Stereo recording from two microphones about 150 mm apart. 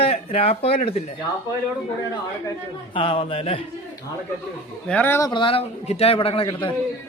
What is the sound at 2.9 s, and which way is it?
Speech, 35° left (ahead or behind).